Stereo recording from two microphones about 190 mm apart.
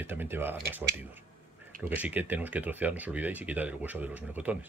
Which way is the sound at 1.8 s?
10° right (ahead or behind).